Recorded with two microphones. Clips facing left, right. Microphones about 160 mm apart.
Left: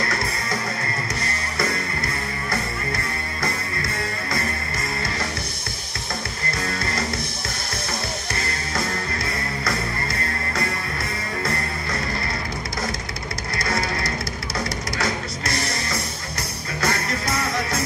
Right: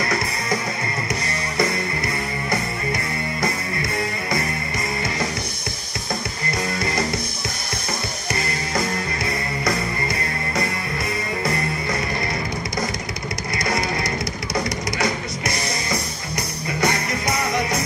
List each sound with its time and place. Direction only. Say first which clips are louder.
8.7 s music: right 3 dB; 20° right (ahead or behind)
13.6 s music: right 2 dB; 20° right (ahead or behind)